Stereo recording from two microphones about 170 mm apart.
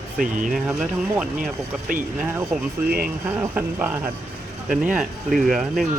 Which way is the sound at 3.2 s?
10° right (ahead or behind).